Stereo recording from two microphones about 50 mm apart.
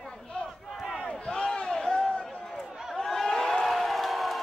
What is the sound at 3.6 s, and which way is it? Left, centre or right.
Music, centre.